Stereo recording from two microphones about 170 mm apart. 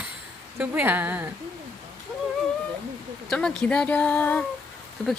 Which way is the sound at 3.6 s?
5° left (ahead or behind).